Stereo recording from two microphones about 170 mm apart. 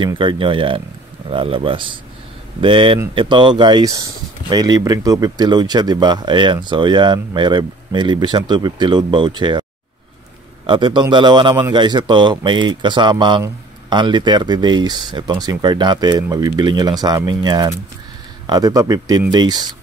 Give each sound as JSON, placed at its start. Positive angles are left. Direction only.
{"t": 0.0, "sound": "speech", "side_deg": -30}
{"t": 10.7, "sound": "speech", "side_deg": -25}